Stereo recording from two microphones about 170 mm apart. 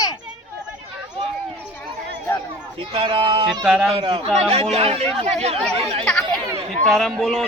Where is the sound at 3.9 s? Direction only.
30° right (ahead or behind).